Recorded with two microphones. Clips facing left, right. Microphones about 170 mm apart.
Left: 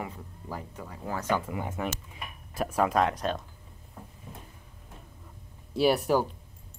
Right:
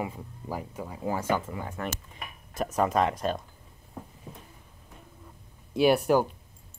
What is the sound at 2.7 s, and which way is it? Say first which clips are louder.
Speech: even; centre (ahead or behind).